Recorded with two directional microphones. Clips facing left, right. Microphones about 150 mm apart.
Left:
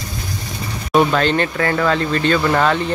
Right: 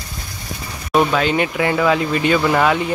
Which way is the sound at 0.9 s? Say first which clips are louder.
Left 1 dB; centre (ahead or behind).